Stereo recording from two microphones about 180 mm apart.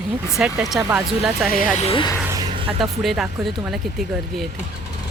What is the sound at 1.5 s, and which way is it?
Speech, 50° left (ahead or behind).